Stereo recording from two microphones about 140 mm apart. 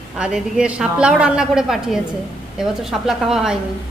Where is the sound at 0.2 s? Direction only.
5° right (ahead or behind).